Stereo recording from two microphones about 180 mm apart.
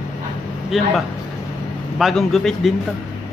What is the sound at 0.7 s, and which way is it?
Speech, centre (ahead or behind).